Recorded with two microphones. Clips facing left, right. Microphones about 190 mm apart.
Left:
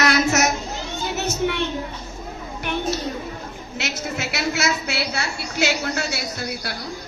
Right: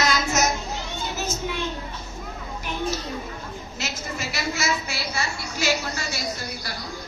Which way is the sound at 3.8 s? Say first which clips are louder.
Left 5 dB; 75° left (ahead or behind).